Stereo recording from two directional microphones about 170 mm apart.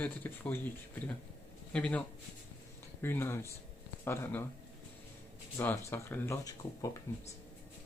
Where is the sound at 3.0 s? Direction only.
15° left (ahead or behind).